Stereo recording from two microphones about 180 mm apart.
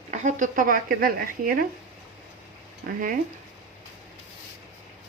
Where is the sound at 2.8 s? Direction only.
50° right (ahead or behind).